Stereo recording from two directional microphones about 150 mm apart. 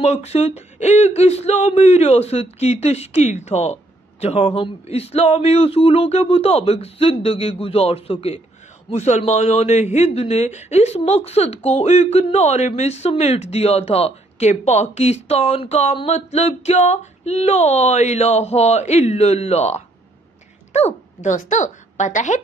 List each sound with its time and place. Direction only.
0.0 s a man's voice: 45° left (ahead or behind)